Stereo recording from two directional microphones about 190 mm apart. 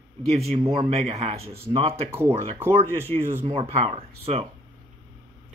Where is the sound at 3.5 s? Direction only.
30° right (ahead or behind).